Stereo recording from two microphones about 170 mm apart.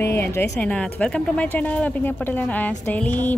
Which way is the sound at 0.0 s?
15° left (ahead or behind).